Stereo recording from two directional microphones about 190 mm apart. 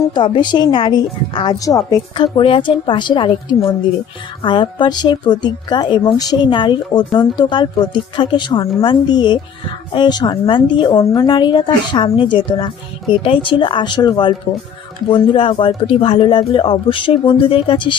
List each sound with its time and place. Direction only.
0.1 s speech: 25° left (ahead or behind)